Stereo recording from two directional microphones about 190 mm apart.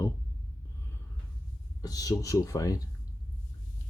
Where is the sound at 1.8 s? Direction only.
20° left (ahead or behind).